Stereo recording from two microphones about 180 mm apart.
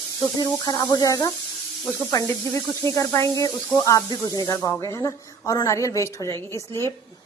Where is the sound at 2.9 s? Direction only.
15° left (ahead or behind).